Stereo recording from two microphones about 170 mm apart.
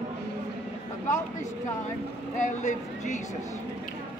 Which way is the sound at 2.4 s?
45° left (ahead or behind).